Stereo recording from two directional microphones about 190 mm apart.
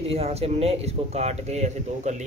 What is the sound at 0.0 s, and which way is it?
Speech, 30° right (ahead or behind).